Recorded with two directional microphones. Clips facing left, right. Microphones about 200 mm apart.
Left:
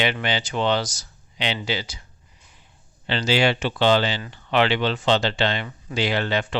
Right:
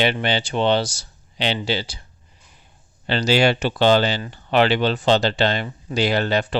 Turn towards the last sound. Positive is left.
turn(degrees=-40)  # may be behind; listen again after turning